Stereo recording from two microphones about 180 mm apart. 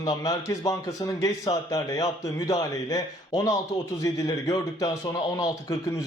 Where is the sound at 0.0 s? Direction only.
20° left (ahead or behind).